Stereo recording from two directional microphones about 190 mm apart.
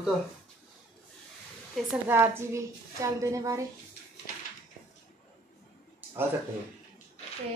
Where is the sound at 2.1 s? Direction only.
15° right (ahead or behind).